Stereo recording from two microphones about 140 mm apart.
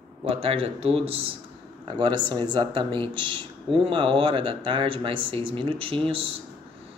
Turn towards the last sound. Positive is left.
turn(degrees=-40)  # may be behind; listen again after turning